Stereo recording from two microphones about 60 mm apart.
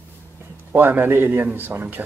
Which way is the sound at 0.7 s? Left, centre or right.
Right.